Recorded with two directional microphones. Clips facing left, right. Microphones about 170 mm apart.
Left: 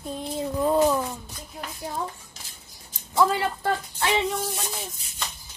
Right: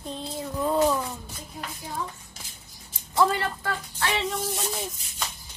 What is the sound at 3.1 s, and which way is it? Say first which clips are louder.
Speech: left 1 dB; 10° left (ahead or behind).